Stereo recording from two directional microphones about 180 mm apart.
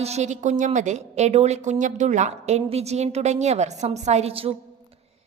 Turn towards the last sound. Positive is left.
turn(degrees=-35)  # may be behind; listen again after turning